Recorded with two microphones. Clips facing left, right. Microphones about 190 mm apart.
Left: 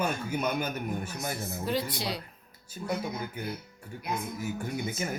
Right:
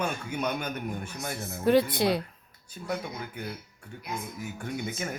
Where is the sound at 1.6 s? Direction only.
55° right (ahead or behind).